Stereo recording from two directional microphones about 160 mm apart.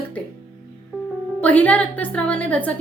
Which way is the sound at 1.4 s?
10° left (ahead or behind).